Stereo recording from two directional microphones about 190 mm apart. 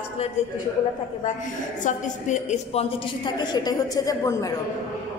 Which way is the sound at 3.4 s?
20° left (ahead or behind).